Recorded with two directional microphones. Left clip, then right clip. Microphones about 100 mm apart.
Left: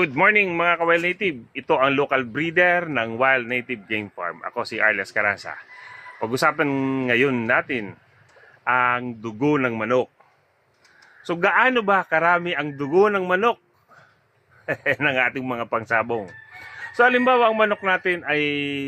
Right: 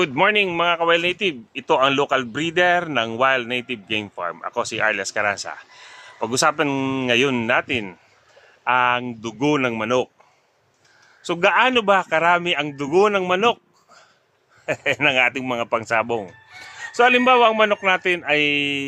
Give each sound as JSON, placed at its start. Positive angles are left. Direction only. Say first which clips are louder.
{"t": 0.0, "sound": "a man's voice", "louder": "even", "side_deg": -20}
{"t": 11.2, "sound": "a man's voice", "louder": "right 2 dB", "side_deg": -15}
{"t": 14.7, "sound": "speech", "louder": "right 2 dB", "side_deg": -20}